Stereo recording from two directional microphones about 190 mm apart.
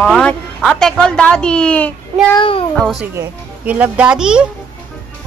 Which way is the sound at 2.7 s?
5° left (ahead or behind).